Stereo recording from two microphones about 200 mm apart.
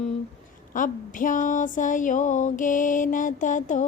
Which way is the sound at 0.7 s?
40° left (ahead or behind).